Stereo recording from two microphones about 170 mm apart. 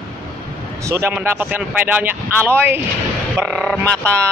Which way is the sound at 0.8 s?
15° right (ahead or behind).